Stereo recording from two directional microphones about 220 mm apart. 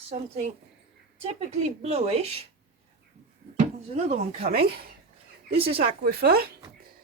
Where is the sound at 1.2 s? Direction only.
30° right (ahead or behind).